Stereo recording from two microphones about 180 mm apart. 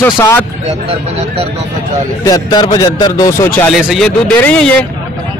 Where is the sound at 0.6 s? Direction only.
35° right (ahead or behind).